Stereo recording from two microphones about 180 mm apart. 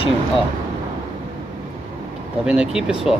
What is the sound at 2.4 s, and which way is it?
Speech, 5° right (ahead or behind).